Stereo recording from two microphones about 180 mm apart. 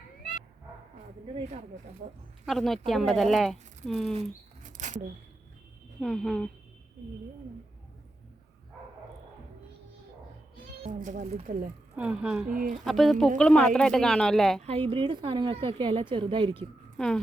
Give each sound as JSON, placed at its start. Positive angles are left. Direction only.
{"t": 1.5, "sound": "speech", "side_deg": -40}
{"t": 2.5, "sound": "speech", "side_deg": 0}
{"t": 4.6, "sound": "a sound", "side_deg": -40}
{"t": 6.0, "sound": "speech", "side_deg": 5}
{"t": 10.8, "sound": "speech", "side_deg": -45}
{"t": 11.9, "sound": "speech", "side_deg": -5}
{"t": 12.5, "sound": "speech", "side_deg": -50}
{"t": 12.8, "sound": "speech", "side_deg": 0}
{"t": 14.6, "sound": "a woman's voice", "side_deg": -30}
{"t": 17.0, "sound": "speech", "side_deg": 5}